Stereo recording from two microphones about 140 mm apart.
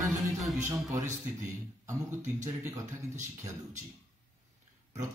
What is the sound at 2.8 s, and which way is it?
Speech, 60° right (ahead or behind).